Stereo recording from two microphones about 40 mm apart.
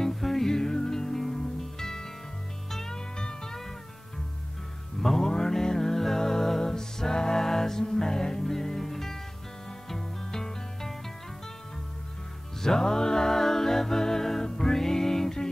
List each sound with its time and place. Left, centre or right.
0.0 s music: centre
5.0 s music: centre
12.6 s music: centre